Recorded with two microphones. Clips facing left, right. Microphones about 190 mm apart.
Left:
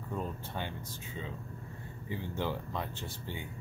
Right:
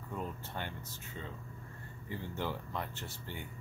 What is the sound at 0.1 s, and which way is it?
Air conditioning, 15° left (ahead or behind).